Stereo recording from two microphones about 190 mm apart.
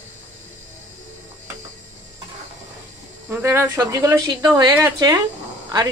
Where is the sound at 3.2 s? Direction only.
10° right (ahead or behind).